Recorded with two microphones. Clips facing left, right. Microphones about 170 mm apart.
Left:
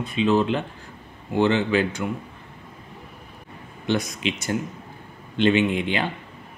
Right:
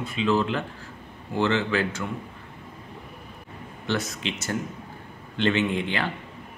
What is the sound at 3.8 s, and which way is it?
Speech, 15° left (ahead or behind).